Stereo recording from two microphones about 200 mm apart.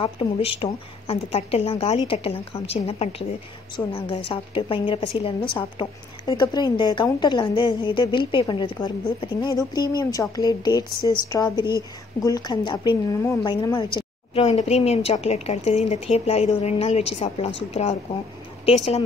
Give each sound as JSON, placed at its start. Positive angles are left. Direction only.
{"t": 0.0, "sound": "a woman's voice", "side_deg": 25}
{"t": 18.7, "sound": "a woman's voice", "side_deg": 30}